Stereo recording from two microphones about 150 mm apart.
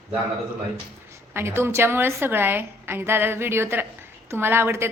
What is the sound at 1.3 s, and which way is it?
A woman's voice, 15° right (ahead or behind).